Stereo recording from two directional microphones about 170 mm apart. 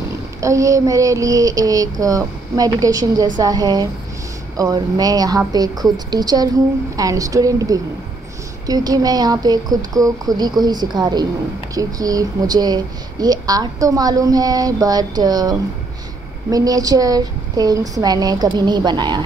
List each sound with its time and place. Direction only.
0.4 s a woman's voice: 20° right (ahead or behind)